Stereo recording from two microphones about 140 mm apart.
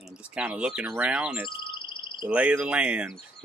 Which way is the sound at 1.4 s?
35° left (ahead or behind).